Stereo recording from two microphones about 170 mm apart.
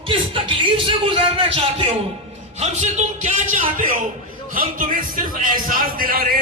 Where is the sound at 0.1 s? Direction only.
30° right (ahead or behind).